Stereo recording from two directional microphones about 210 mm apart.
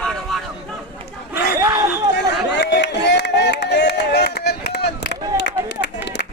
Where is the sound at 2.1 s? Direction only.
55° left (ahead or behind).